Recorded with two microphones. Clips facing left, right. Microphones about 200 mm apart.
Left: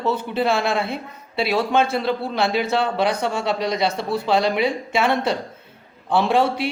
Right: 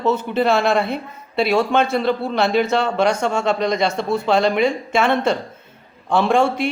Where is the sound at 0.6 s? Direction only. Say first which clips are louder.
Right 4 dB; centre (ahead or behind).